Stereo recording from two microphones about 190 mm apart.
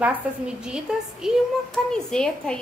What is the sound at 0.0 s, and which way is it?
A woman's voice, 5° right (ahead or behind).